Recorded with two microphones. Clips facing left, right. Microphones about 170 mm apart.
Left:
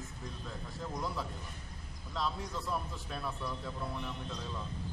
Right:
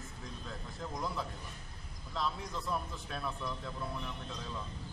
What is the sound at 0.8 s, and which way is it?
A man's voice, centre (ahead or behind).